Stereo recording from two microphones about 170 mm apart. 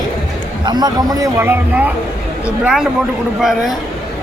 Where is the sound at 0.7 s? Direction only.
25° right (ahead or behind).